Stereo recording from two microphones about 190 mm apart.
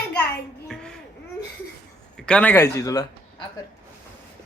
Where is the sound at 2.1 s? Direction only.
5° left (ahead or behind).